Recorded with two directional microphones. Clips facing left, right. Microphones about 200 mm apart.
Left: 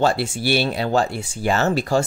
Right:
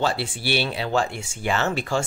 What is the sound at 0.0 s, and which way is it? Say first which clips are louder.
Speech: left 5 dB; 45° left (ahead or behind).